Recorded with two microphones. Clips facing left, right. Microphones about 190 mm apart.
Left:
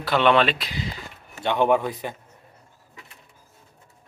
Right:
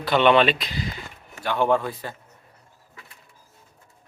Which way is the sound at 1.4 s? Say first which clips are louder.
Left 1 dB; 20° left (ahead or behind).